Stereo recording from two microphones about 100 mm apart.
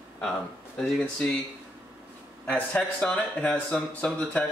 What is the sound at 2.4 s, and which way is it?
Speech, 15° left (ahead or behind).